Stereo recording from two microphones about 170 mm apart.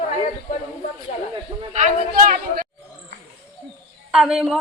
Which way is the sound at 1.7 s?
45° right (ahead or behind).